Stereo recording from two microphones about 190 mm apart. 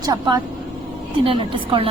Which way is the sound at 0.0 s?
20° right (ahead or behind).